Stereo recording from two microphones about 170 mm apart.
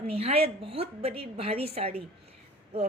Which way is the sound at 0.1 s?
35° right (ahead or behind).